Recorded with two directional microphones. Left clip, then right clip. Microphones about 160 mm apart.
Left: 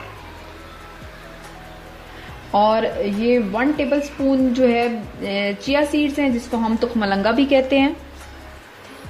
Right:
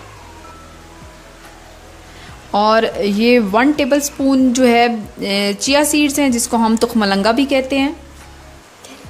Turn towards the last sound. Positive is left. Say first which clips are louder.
# even
turn(degrees=-15)  # may be behind; listen again after turning